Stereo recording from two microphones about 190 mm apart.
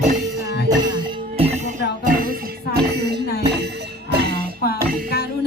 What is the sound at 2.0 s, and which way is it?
Music, 50° right (ahead or behind).